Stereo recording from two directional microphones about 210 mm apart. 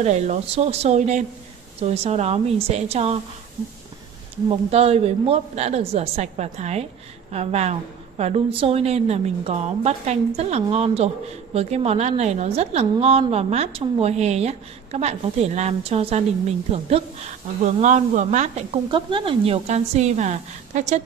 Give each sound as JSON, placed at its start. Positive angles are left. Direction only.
{"t": 0.0, "sound": "speech", "side_deg": -35}
{"t": 4.5, "sound": "a woman's voice", "side_deg": -30}